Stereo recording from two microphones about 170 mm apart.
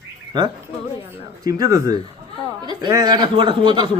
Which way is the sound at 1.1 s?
20° right (ahead or behind).